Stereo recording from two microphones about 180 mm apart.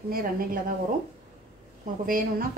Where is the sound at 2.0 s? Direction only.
50° right (ahead or behind).